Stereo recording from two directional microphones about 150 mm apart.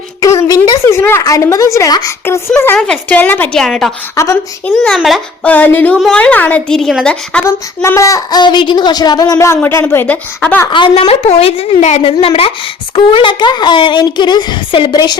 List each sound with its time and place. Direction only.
0.2 s speech: 25° left (ahead or behind)
0.9 s child singing: 15° left (ahead or behind)
2.7 s a woman's voice: 5° left (ahead or behind)
4.1 s child singing: 20° left (ahead or behind)
4.6 s a woman's voice: 5° left (ahead or behind)
5.5 s a woman's voice: 10° left (ahead or behind)
7.4 s child singing: 20° left (ahead or behind)
9.6 s speech: 10° left (ahead or behind)
10.7 s speech: 35° left (ahead or behind)